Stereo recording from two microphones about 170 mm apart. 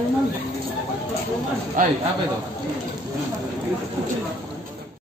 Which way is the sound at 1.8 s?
50° right (ahead or behind).